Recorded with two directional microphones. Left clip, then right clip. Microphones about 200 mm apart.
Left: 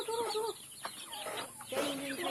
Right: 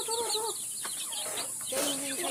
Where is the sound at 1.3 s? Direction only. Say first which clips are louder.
Right 4 dB; 20° right (ahead or behind).